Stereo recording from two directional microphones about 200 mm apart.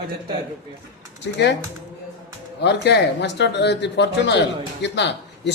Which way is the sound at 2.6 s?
60° left (ahead or behind).